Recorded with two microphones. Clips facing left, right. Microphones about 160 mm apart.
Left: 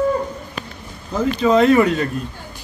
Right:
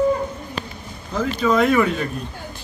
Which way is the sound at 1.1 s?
20° left (ahead or behind).